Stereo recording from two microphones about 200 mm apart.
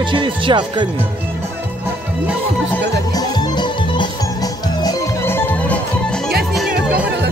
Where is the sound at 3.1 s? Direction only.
20° left (ahead or behind).